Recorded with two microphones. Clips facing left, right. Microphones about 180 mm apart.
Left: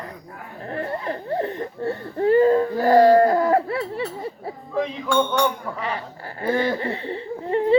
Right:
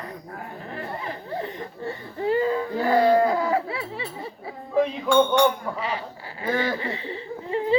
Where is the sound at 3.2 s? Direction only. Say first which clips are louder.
Left 4 dB; 55° left (ahead or behind).